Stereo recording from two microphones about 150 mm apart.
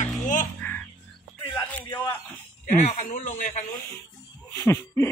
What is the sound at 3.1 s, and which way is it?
Speech, 60° left (ahead or behind).